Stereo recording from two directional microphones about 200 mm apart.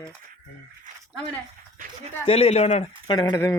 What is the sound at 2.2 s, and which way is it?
Speech, 30° left (ahead or behind).